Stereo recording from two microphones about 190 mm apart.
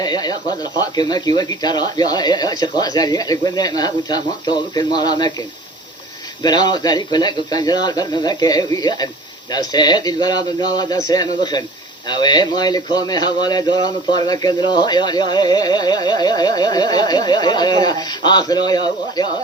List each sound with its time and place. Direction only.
0.0 s speech: 20° left (ahead or behind)